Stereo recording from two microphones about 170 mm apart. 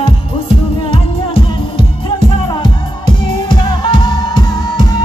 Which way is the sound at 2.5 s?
25° left (ahead or behind).